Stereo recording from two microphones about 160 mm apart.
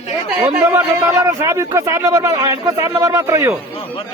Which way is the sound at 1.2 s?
20° right (ahead or behind).